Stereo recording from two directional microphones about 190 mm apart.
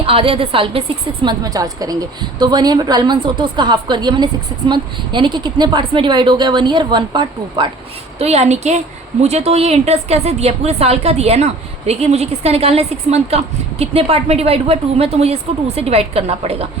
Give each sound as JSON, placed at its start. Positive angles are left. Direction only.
{"t": 0.0, "sound": "a woman's voice", "side_deg": -30}
{"t": 8.2, "sound": "a woman's voice", "side_deg": -35}